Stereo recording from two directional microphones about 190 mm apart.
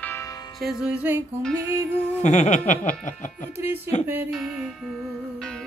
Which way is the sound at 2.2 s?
40° left (ahead or behind).